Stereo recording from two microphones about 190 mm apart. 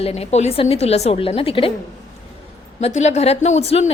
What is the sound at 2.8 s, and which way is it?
A woman's voice, 35° left (ahead or behind).